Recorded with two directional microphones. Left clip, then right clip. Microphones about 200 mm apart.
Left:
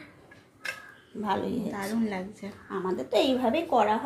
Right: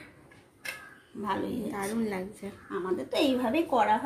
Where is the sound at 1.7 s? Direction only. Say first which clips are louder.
Left 1 dB; 5° right (ahead or behind).